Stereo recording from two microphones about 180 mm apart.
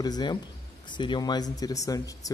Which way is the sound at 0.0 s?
25° left (ahead or behind).